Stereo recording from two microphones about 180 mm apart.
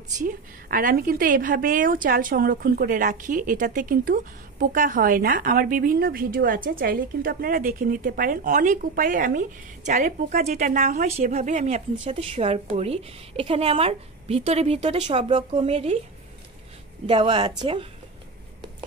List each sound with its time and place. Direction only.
0.2 s a woman's voice: 50° right (ahead or behind); by 16.0 s 35° right (ahead or behind)
17.0 s a woman's voice: 30° right (ahead or behind)